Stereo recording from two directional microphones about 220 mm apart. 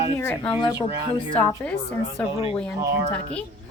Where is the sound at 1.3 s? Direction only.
5° left (ahead or behind).